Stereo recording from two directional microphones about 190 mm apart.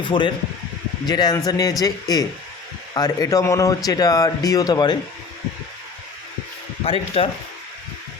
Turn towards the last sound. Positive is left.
turn(degrees=30)  # may be behind; listen again after turning